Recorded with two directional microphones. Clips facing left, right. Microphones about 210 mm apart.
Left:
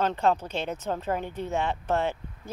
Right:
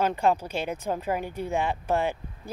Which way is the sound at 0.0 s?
10° right (ahead or behind).